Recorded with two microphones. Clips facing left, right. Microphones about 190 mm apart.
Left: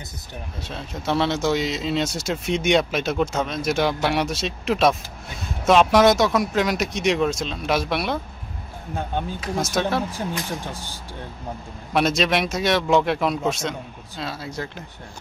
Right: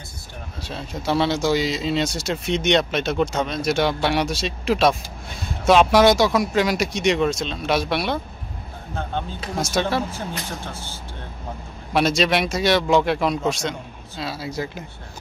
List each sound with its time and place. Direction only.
0.7 s speech: centre (ahead or behind)
8.9 s speech: 10° left (ahead or behind)
9.8 s speech: centre (ahead or behind)
10.1 s speech: 15° left (ahead or behind)
11.9 s speech: centre (ahead or behind)